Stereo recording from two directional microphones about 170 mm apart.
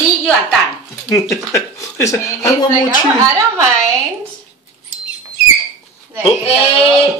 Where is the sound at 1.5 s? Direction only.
20° left (ahead or behind).